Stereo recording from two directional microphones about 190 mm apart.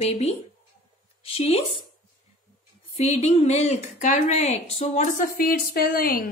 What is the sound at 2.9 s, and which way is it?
Speech, 35° left (ahead or behind).